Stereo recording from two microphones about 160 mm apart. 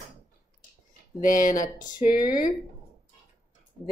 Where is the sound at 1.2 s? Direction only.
60° left (ahead or behind).